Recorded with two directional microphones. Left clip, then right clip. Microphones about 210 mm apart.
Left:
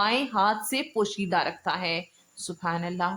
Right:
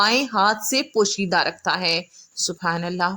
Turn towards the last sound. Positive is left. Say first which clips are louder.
# right 6 dB
turn(degrees=-30)  # may be behind; listen again after turning